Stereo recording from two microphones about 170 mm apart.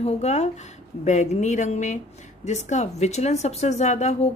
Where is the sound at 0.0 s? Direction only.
40° left (ahead or behind).